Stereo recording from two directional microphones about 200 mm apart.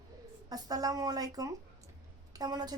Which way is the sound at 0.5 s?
20° right (ahead or behind).